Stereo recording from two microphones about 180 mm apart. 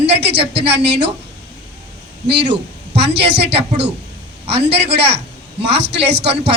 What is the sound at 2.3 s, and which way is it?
Speech, 70° right (ahead or behind).